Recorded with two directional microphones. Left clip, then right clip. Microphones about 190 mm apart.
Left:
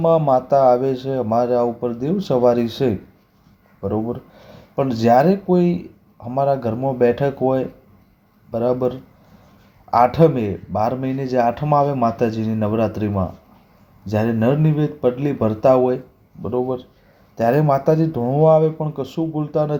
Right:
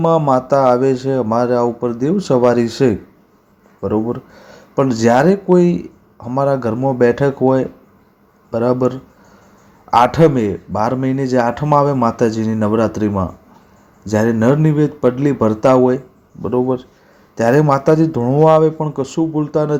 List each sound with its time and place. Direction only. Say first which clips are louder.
0.0 s speech: right 2 dB; 25° right (ahead or behind)